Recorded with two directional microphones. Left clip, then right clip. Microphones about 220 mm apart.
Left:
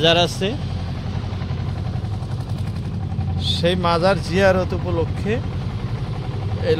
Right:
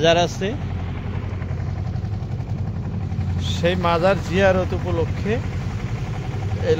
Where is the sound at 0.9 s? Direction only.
50° left (ahead or behind).